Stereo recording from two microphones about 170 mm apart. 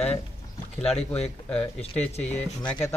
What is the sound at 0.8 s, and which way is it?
Speech, 35° left (ahead or behind).